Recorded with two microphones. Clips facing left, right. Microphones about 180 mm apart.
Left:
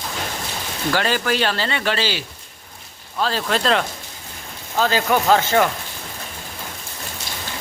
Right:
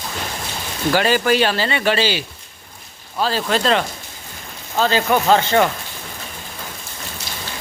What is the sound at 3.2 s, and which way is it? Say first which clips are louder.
Speech: right 2 dB; centre (ahead or behind).